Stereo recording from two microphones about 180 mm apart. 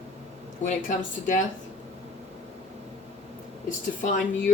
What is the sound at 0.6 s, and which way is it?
Speech, 45° left (ahead or behind).